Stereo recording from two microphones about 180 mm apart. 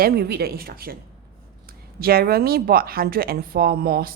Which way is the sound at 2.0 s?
55° right (ahead or behind).